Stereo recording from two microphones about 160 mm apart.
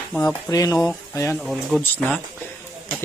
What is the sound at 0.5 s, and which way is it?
Speech, 20° left (ahead or behind).